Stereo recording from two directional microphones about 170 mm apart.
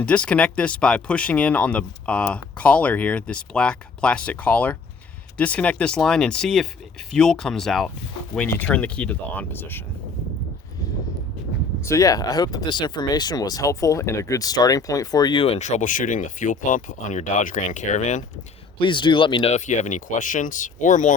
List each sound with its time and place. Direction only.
0.0 s speech: 5° left (ahead or behind)
11.8 s speech: 15° left (ahead or behind); by 18.3 s 45° left (ahead or behind)
18.8 s speech: 30° left (ahead or behind); by 21.1 s 45° left (ahead or behind)